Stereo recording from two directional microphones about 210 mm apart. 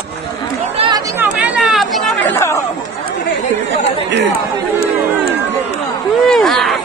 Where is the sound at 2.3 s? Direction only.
10° left (ahead or behind).